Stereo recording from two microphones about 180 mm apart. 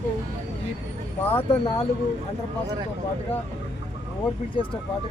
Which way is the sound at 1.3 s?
30° left (ahead or behind).